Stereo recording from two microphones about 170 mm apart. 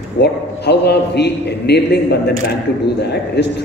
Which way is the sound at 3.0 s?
80° left.